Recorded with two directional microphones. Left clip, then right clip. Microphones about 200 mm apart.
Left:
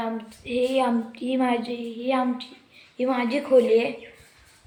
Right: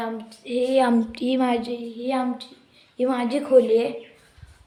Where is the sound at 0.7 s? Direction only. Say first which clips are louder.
Right 4 dB; 45° right (ahead or behind).